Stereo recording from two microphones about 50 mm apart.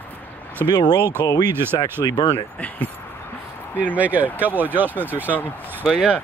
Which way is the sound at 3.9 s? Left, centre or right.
Right.